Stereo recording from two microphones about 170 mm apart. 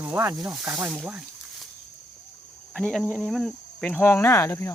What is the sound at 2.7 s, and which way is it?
Speech, 5° left (ahead or behind).